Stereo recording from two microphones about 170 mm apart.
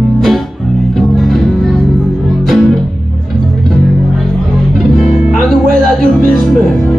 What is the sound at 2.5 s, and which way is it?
Music, centre (ahead or behind).